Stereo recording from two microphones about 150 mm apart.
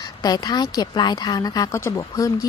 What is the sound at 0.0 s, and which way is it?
A woman's voice, 25° left (ahead or behind).